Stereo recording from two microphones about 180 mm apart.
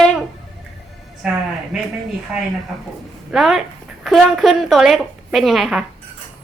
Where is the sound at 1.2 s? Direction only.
5° right (ahead or behind).